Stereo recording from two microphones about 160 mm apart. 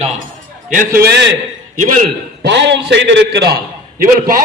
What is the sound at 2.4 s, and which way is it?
A man's voice, 90° right.